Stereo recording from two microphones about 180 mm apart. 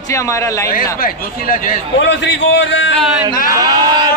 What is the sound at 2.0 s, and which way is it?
Speech, 85° left.